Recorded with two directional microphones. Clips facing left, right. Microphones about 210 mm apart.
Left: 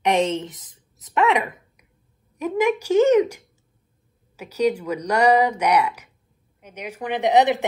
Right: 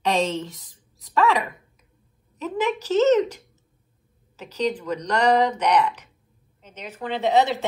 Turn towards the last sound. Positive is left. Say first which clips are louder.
# left 3 dB
turn(degrees=15)  # may be behind; listen again after turning